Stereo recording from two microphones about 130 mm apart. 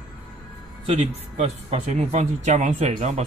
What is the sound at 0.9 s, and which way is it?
Speech, 55° right (ahead or behind).